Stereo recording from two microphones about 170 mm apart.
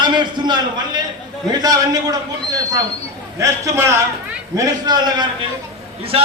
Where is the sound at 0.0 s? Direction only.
25° right (ahead or behind).